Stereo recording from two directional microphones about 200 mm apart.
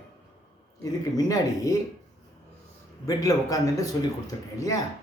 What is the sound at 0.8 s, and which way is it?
Speech, 15° left (ahead or behind).